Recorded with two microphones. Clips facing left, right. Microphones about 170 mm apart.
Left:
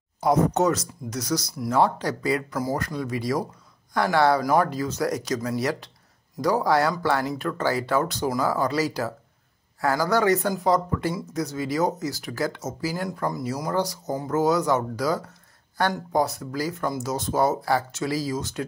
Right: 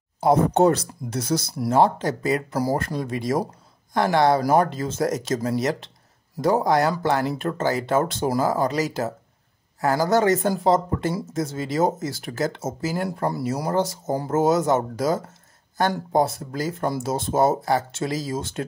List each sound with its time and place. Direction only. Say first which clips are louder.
0.2 s speech: right 3 dB; 30° right (ahead or behind)
2.5 s speech: right 3 dB; 35° right (ahead or behind)